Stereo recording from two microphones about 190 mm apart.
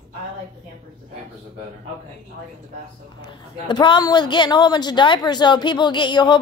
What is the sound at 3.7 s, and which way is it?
A woman's voice, 25° left (ahead or behind).